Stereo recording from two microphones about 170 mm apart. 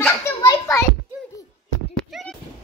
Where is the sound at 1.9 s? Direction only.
5° left (ahead or behind).